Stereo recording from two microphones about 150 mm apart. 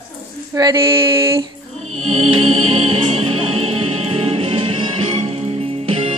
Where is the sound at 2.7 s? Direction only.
40° right (ahead or behind).